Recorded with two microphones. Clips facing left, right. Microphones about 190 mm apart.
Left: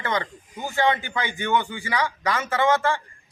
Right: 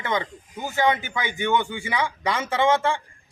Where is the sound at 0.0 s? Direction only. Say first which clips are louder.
Even; 15° right (ahead or behind).